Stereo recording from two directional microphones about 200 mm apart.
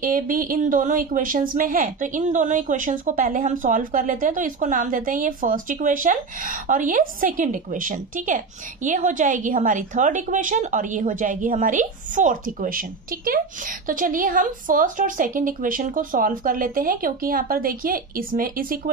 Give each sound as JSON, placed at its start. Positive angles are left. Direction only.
{"t": 0.0, "sound": "a woman's voice", "side_deg": -45}